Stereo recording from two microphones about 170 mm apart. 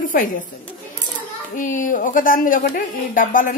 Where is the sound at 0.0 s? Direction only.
55° left (ahead or behind).